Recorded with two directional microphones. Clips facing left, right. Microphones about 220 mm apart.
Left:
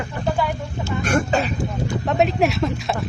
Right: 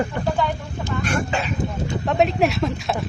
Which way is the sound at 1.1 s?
40° left (ahead or behind).